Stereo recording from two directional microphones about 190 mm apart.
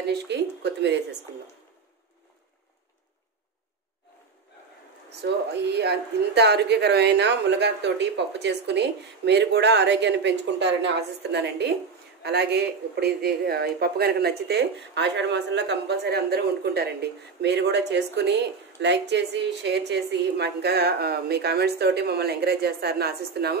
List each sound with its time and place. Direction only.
0.0 s speech: 60° right (ahead or behind)
5.2 s speech: 60° right (ahead or behind)